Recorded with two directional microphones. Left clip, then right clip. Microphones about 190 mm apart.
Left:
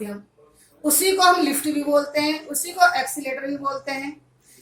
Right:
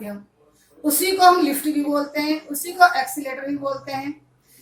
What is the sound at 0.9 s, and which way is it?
A woman's voice, 25° left (ahead or behind).